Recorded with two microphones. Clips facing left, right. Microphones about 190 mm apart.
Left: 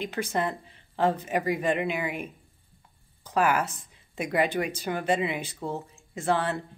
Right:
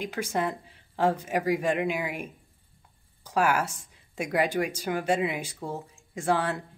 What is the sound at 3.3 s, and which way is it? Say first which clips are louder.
Speech: left 1 dB; 10° right (ahead or behind).